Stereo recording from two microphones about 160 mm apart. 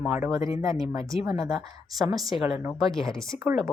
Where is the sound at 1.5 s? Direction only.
Centre (ahead or behind).